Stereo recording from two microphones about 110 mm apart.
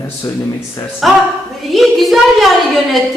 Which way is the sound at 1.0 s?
Centre (ahead or behind).